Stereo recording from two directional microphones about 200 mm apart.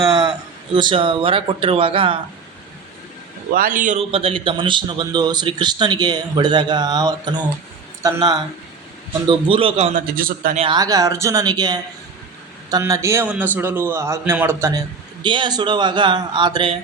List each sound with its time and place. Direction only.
0.0 s a man's voice: 20° right (ahead or behind)
3.5 s a man's voice: 45° right (ahead or behind); by 9.9 s 30° right (ahead or behind)
9.9 s a man's voice: 45° right (ahead or behind)
10.6 s a man's voice: 20° right (ahead or behind)